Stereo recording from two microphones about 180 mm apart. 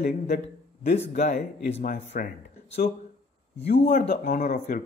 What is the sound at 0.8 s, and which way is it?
Speech, 40° left (ahead or behind).